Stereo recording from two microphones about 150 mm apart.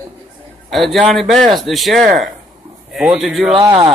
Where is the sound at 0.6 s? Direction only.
Centre (ahead or behind).